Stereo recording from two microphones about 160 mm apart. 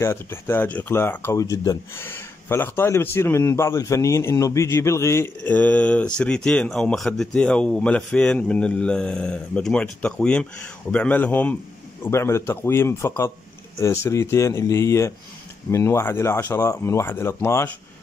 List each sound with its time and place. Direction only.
0.0 s speech: 15° left (ahead or behind)